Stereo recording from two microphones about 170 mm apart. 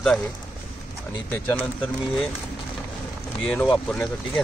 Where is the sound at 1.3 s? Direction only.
10° left (ahead or behind).